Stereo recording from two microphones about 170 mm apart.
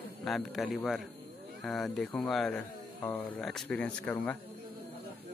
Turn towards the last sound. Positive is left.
turn(degrees=10)  # may be behind; listen again after turning